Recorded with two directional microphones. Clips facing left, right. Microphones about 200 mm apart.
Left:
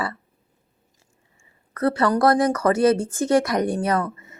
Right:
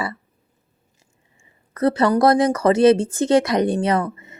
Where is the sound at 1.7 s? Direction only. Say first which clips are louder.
Right 3 dB; 20° right (ahead or behind).